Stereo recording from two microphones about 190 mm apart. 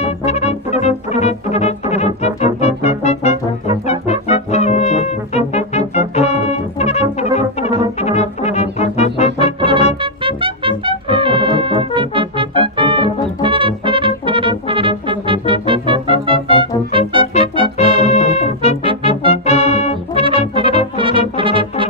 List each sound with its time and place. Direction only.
0.0 s brass instrument: 35° left (ahead or behind)
10.2 s brass instrument: 25° right (ahead or behind)
17.7 s music: 35° left (ahead or behind)
18.9 s music: 25° right (ahead or behind)
19.3 s music: 35° left (ahead or behind)
20.2 s brass instrument: 25° right (ahead or behind)